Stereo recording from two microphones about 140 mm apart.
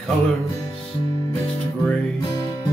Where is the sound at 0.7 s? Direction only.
30° left (ahead or behind).